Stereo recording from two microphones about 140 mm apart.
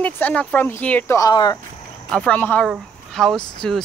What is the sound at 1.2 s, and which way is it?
Speech, 25° left (ahead or behind).